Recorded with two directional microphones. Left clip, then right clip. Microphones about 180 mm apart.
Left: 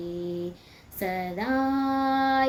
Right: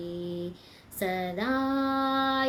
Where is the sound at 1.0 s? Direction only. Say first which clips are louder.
Even; 15° right (ahead or behind).